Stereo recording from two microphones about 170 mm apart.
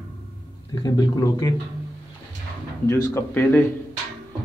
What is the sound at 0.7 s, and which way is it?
Speech, 25° left (ahead or behind).